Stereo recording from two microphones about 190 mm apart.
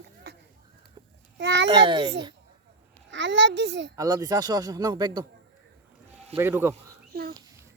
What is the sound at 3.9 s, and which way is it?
Speech, 20° right (ahead or behind).